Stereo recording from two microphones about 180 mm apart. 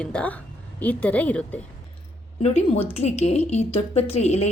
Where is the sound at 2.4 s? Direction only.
35° left (ahead or behind).